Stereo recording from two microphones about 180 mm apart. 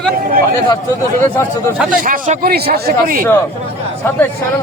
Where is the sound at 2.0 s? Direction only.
50° right (ahead or behind).